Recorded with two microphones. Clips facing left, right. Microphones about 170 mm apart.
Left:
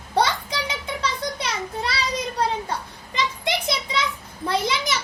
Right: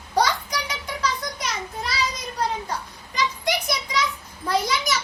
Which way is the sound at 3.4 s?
25° left (ahead or behind).